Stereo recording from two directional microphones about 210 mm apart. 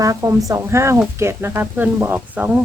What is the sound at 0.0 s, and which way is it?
Speech, 15° right (ahead or behind).